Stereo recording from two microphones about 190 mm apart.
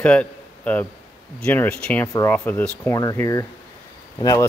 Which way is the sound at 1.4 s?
10° left (ahead or behind).